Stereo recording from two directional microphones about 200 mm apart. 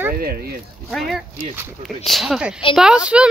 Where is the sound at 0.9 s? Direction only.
Centre (ahead or behind).